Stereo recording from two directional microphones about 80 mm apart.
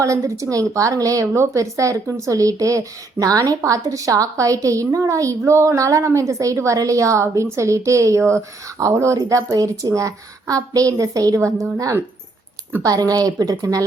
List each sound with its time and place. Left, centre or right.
0.0 s a woman's voice: right
9.1 s a woman's voice: right
12.8 s a woman's voice: right